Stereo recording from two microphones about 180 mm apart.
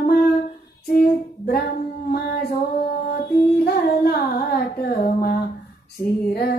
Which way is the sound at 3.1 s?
60° left (ahead or behind).